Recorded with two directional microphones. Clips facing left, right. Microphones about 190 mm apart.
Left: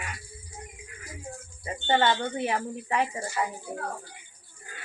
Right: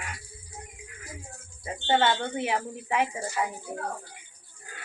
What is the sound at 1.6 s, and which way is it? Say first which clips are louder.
Child singing: even; centre (ahead or behind).